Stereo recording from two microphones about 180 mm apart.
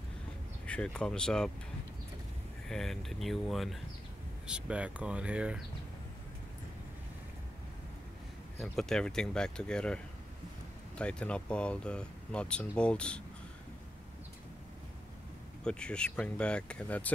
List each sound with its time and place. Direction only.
0.7 s speech: 5° left (ahead or behind)
2.7 s speech: centre (ahead or behind)
8.5 s speech: centre (ahead or behind)
11.0 s speech: 5° left (ahead or behind)
15.6 s speech: 5° left (ahead or behind)